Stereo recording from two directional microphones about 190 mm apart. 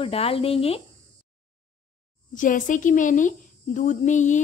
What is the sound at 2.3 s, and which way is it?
Speech, 45° left (ahead or behind).